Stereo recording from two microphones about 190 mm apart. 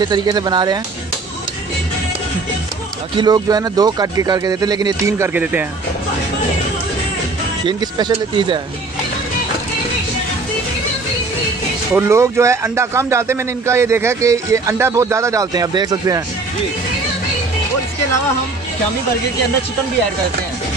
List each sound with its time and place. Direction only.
0.0 s speech: 20° right (ahead or behind)
3.2 s speech: 20° right (ahead or behind)
7.6 s speech: 25° right (ahead or behind)
11.9 s a man's voice: 15° right (ahead or behind)